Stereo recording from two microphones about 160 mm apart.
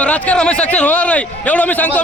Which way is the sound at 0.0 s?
10° left (ahead or behind).